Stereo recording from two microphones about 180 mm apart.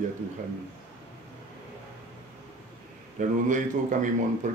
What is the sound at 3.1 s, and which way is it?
Speech, 45° right (ahead or behind).